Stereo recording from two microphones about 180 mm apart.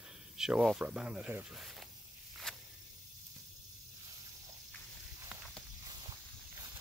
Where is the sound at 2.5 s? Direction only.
5° left (ahead or behind).